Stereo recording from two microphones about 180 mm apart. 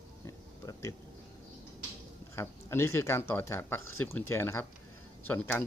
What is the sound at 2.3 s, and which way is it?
Speech, 15° left (ahead or behind).